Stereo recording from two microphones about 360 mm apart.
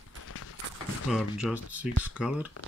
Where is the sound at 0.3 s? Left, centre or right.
Left.